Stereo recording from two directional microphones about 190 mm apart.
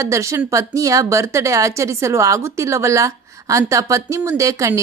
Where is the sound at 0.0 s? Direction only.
15° right (ahead or behind).